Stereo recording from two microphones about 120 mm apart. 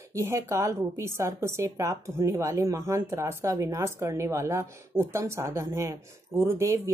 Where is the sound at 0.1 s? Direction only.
25° right (ahead or behind).